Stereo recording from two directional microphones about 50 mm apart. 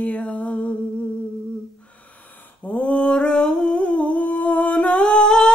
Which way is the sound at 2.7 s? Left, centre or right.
Left.